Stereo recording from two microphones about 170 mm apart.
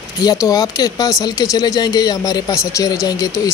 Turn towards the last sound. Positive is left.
turn(degrees=20)  # may be behind; listen again after turning